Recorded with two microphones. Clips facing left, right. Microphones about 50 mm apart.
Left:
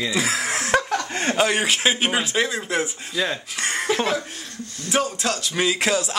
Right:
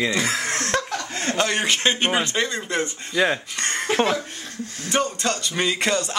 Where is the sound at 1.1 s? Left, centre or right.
Left.